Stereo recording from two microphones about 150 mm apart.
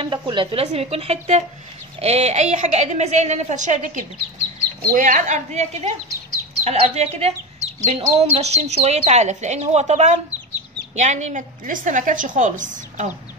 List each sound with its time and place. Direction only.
0.0 s a woman's voice: 35° right (ahead or behind); by 13.1 s 55° right (ahead or behind)